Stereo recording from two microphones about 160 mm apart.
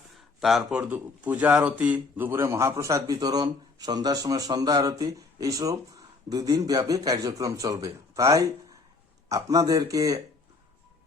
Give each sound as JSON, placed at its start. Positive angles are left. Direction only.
{"t": 0.3, "sound": "a man's voice", "side_deg": 0}